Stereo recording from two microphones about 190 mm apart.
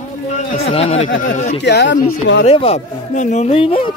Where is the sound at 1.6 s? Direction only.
60° left (ahead or behind).